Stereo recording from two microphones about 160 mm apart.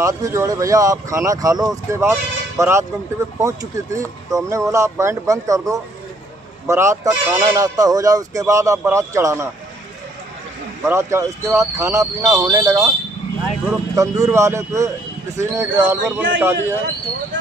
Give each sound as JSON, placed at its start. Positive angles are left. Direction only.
{"t": 0.0, "sound": "a man's voice", "side_deg": -20}
{"t": 10.9, "sound": "speech", "side_deg": -15}
{"t": 13.9, "sound": "a man's voice", "side_deg": -20}